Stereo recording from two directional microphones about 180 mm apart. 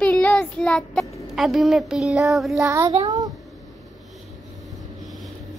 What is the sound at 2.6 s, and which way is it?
Speech, 15° right (ahead or behind).